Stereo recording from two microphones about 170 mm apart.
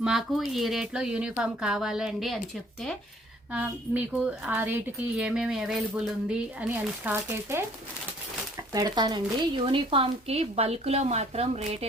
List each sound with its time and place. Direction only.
0.0 s speech: centre (ahead or behind)
3.5 s speech: 10° right (ahead or behind)
8.7 s speech: 20° right (ahead or behind); by 11.9 s 35° right (ahead or behind)